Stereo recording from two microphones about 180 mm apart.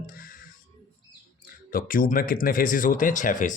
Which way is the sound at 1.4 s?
50° left (ahead or behind).